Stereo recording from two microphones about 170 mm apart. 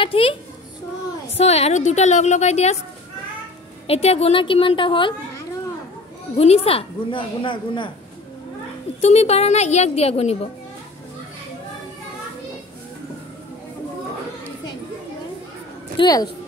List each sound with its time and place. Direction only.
0.0 s a woman's voice: 30° left (ahead or behind)
3.8 s a woman's voice: 35° left (ahead or behind)
6.3 s a woman's voice: 35° left (ahead or behind)
9.0 s a woman's voice: 40° left (ahead or behind)
16.0 s speech: 25° left (ahead or behind)